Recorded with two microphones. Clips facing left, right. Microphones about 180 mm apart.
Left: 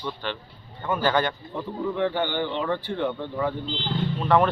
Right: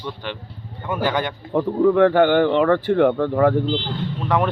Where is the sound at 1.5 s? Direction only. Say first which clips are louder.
Right 18 dB; 70° right (ahead or behind).